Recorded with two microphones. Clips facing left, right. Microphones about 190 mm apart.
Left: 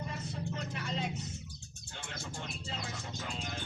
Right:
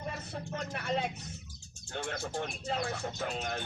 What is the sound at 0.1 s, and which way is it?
Vehicle, 60° right (ahead or behind).